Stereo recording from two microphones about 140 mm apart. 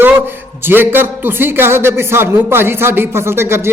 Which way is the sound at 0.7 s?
15° right (ahead or behind).